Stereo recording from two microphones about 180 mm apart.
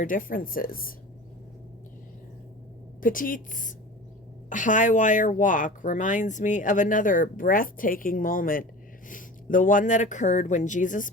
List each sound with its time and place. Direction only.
0.0 s speech: 50° left (ahead or behind)
3.0 s speech: 50° left (ahead or behind)